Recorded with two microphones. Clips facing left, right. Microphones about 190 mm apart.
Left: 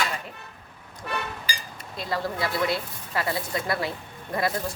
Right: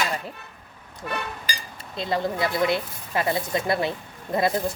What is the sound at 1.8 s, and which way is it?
Speech, 25° right (ahead or behind).